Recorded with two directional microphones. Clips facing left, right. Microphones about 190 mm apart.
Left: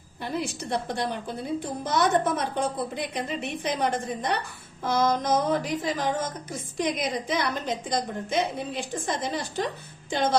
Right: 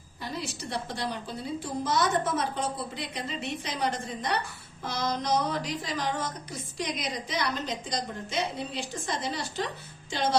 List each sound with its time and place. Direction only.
0.4 s a woman's voice: 55° left (ahead or behind)